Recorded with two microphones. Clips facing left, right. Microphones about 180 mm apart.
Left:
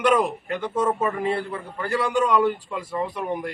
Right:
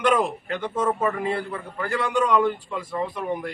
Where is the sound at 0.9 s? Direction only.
25° left (ahead or behind).